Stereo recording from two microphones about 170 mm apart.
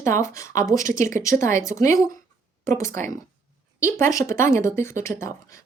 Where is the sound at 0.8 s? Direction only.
50° right (ahead or behind).